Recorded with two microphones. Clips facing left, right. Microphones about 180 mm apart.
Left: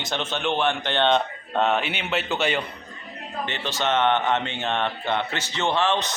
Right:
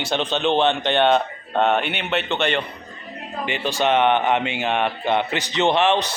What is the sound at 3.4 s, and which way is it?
Speech, 15° right (ahead or behind).